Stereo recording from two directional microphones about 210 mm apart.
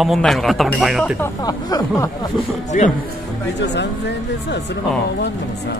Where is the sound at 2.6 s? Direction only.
35° left (ahead or behind).